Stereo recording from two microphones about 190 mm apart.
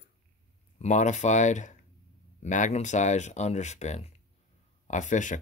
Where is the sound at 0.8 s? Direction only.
40° left (ahead or behind).